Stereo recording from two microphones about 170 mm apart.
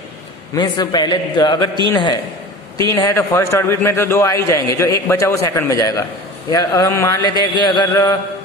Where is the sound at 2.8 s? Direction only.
20° left (ahead or behind).